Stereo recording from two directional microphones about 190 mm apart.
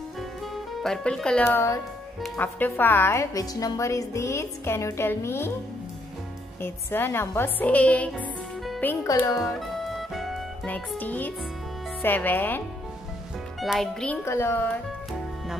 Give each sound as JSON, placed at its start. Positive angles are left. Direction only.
{"t": 0.2, "sound": "music", "side_deg": 0}
{"t": 2.2, "sound": "a woman's voice", "side_deg": 5}
{"t": 6.6, "sound": "a woman's voice", "side_deg": 10}
{"t": 8.2, "sound": "music", "side_deg": 0}
{"t": 9.0, "sound": "a woman's voice", "side_deg": 15}
{"t": 9.6, "sound": "music", "side_deg": 0}
{"t": 12.0, "sound": "a woman's voice", "side_deg": 10}